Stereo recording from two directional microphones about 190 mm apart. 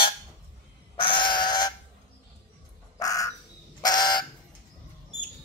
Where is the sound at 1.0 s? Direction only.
25° left (ahead or behind).